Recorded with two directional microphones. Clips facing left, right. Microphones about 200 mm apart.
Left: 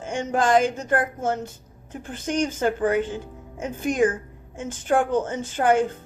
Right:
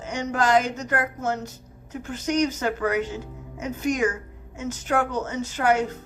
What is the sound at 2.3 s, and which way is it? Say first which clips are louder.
Speech: right 2 dB; 50° left (ahead or behind).